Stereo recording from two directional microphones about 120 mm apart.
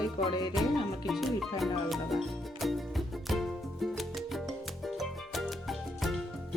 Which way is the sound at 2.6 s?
Centre (ahead or behind).